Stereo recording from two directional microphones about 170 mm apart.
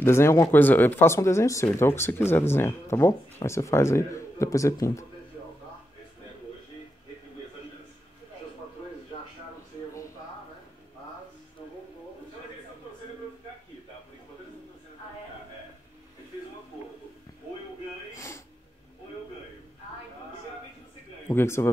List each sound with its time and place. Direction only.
0.0 s speech: 15° left (ahead or behind)
18.1 s a sound: 15° left (ahead or behind)
21.3 s speech: 15° left (ahead or behind)